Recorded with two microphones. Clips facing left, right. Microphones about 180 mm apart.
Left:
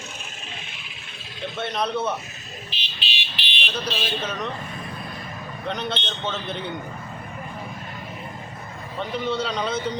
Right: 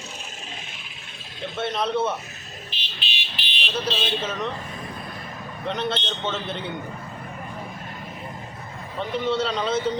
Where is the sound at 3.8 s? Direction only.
25° right (ahead or behind).